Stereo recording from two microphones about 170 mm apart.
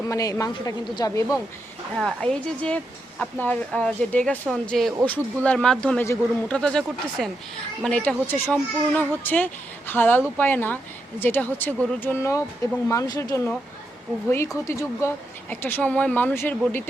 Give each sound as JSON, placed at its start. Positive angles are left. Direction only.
{"t": 0.1, "sound": "a woman's voice", "side_deg": 20}
{"t": 2.0, "sound": "speech", "side_deg": 5}